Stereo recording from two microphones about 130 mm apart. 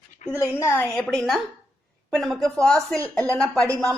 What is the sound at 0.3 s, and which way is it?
Speech, 20° left (ahead or behind).